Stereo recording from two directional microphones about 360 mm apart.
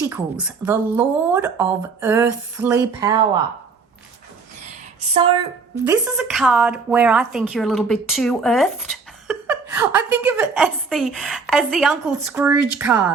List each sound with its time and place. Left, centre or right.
0.0 s speech: centre
4.9 s a sound: centre
5.8 s a woman's voice: centre